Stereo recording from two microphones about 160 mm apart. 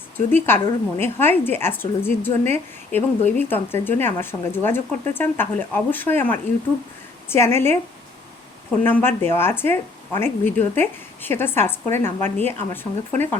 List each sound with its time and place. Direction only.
0.3 s speech: 15° left (ahead or behind)
8.8 s speech: 15° left (ahead or behind)